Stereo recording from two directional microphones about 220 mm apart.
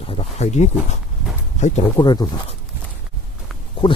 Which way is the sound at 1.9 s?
20° left (ahead or behind).